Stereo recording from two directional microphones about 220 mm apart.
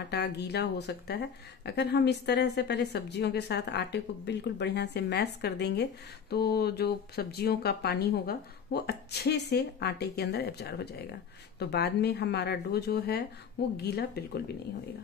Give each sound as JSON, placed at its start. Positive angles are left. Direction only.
{"t": 0.1, "sound": "speech", "side_deg": 50}